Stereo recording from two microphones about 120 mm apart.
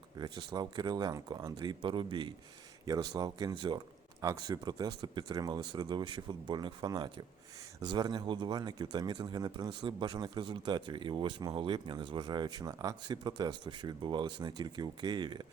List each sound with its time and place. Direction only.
0.2 s speech: 35° right (ahead or behind)